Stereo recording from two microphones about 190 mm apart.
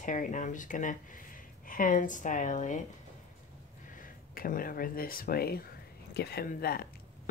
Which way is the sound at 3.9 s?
45° left (ahead or behind).